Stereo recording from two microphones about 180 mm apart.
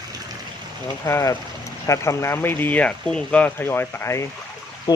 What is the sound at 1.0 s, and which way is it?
Speech, 15° left (ahead or behind).